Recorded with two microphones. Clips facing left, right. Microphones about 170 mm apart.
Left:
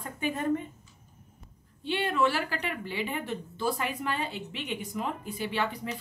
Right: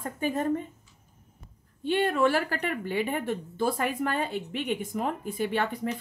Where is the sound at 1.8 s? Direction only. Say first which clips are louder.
Right 3 dB; 50° right (ahead or behind).